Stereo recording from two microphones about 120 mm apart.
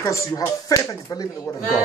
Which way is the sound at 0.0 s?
25° left (ahead or behind).